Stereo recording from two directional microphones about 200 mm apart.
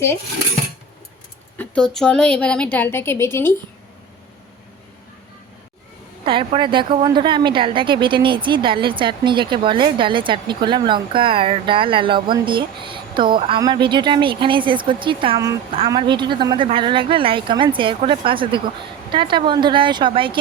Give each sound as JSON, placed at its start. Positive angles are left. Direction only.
{"t": 1.5, "sound": "a woman's voice", "side_deg": 5}
{"t": 6.2, "sound": "a woman's voice", "side_deg": -25}